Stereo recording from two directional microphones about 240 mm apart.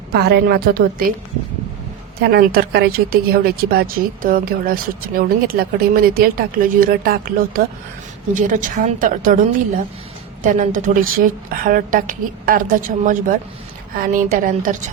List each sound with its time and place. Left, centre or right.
0.1 s speech: right
2.2 s speech: right